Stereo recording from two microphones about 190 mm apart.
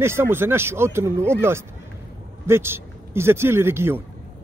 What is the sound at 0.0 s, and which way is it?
A man's voice, 15° right (ahead or behind).